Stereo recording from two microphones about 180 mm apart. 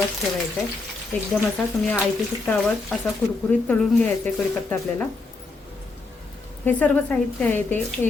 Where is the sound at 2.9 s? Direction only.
Centre (ahead or behind).